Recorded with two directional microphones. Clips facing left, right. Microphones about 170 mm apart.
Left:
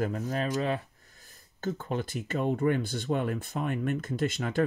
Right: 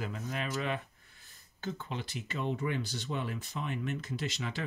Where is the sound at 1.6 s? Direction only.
45° left (ahead or behind).